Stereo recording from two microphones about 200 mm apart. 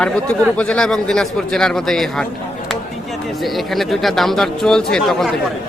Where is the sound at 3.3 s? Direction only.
Centre (ahead or behind).